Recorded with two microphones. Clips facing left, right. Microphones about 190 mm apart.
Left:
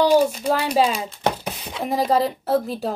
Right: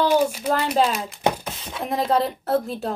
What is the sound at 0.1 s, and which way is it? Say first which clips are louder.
Speech: left 3 dB; 5° right (ahead or behind).